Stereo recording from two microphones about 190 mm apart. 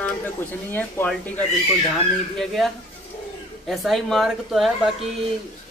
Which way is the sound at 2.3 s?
Centre (ahead or behind).